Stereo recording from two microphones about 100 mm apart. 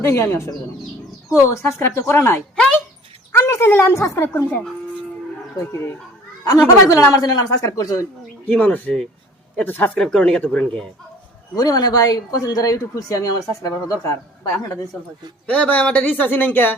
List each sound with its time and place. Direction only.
0.0 s a woman's voice: 25° left (ahead or behind)
8.4 s a woman's voice: 15° left (ahead or behind)
10.0 s speech: 5° left (ahead or behind)
11.5 s speech: 40° left (ahead or behind)
15.4 s a woman's voice: 15° left (ahead or behind)